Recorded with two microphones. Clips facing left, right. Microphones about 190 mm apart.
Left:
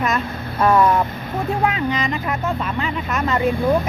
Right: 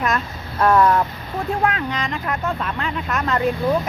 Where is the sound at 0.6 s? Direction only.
5° left (ahead or behind).